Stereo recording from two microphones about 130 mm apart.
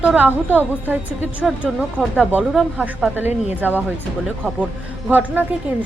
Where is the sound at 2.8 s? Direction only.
10° right (ahead or behind).